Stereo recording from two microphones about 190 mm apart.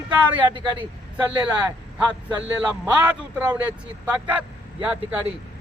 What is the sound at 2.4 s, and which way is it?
A man's voice, 10° right (ahead or behind).